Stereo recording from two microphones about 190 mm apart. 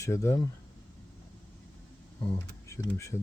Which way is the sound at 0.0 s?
15° left (ahead or behind).